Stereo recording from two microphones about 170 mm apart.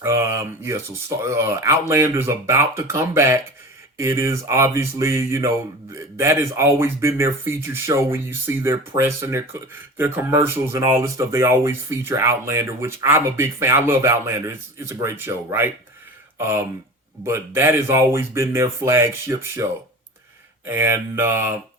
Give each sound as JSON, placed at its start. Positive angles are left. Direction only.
{"t": 0.0, "sound": "speech", "side_deg": -15}
{"t": 17.2, "sound": "speech", "side_deg": -15}
{"t": 20.7, "sound": "speech", "side_deg": -15}